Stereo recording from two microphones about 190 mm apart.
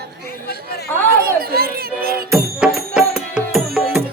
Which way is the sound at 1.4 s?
55° right (ahead or behind).